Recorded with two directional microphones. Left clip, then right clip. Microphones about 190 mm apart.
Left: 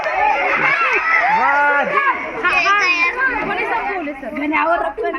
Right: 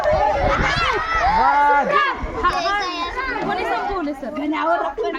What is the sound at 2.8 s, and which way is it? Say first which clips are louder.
Children playing: left 9 dB; 35° right (ahead or behind).